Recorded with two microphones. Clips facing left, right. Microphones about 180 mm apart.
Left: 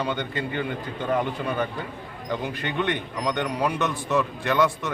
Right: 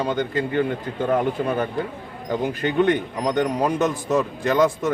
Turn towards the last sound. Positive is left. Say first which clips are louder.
# right 4 dB
turn(degrees=-45)  # may be behind; listen again after turning